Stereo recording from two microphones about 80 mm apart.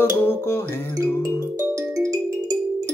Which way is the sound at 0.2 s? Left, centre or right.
Left.